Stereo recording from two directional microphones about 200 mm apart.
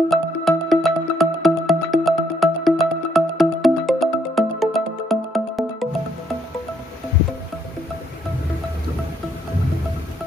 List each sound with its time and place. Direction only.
0.1 s music: centre (ahead or behind)